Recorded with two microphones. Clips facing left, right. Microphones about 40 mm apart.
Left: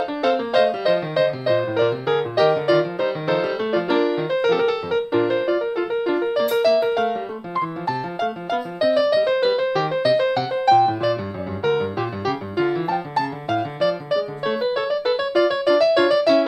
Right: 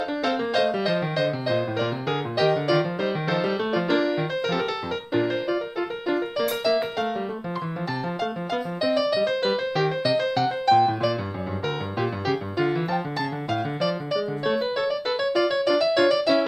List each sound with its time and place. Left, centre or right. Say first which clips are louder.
0.2 s music: left 6 dB; centre
7.0 s keyboard: left 4 dB; centre
8.8 s music: left 5 dB; centre